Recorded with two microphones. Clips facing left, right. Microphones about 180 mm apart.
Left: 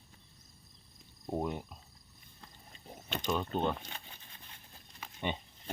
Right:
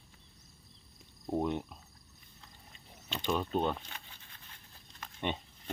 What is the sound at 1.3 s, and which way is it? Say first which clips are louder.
Speech: right 3 dB; 5° left (ahead or behind).